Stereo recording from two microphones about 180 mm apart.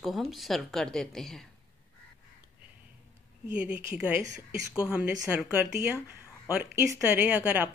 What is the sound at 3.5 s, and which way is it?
A woman's voice, 10° right (ahead or behind).